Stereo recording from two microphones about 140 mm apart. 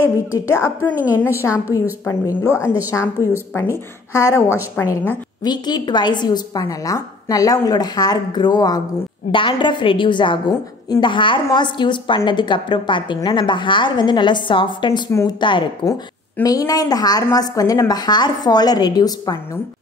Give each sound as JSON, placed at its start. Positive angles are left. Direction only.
{"t": 0.0, "sound": "a woman's voice", "side_deg": 20}
{"t": 5.4, "sound": "a woman's voice", "side_deg": 30}
{"t": 15.0, "sound": "a woman's voice", "side_deg": 25}